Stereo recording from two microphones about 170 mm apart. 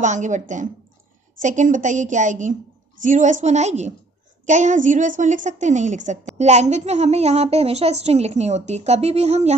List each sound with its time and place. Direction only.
0.0 s a woman's voice: 45° right (ahead or behind)